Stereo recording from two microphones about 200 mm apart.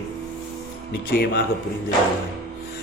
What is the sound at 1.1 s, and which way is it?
Speech, 50° left (ahead or behind).